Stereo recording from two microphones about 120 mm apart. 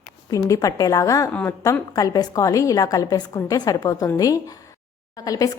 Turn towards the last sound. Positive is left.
turn(degrees=30)  # may be behind; listen again after turning